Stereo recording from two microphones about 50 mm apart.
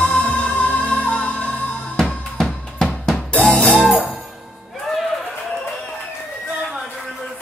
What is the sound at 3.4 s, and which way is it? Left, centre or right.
Music, left.